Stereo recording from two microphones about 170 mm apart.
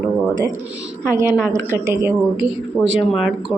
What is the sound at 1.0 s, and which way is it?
Speech, 15° right (ahead or behind).